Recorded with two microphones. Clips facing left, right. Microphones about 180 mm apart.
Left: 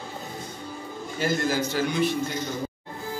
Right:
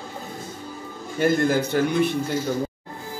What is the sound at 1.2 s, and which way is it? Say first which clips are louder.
Speech: right 5 dB; 55° right (ahead or behind).